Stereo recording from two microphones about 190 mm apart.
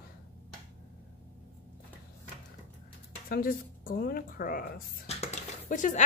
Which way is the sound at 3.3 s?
50° left (ahead or behind).